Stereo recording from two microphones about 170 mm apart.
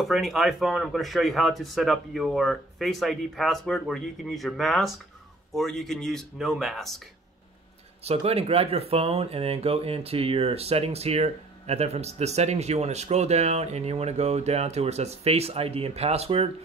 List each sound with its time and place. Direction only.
0.0 s speech: centre (ahead or behind)
8.0 s speech: 35° right (ahead or behind)